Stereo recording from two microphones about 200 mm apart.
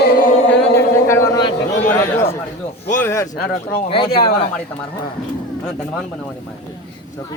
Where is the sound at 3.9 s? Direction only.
25° left (ahead or behind).